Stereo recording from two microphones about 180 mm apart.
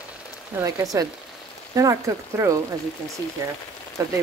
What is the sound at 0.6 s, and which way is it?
Speech, 15° right (ahead or behind).